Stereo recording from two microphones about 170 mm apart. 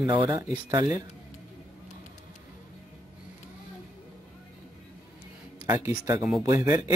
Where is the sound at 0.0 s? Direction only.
20° right (ahead or behind).